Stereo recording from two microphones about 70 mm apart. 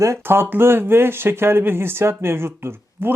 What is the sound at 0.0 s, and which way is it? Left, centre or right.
Speech, right.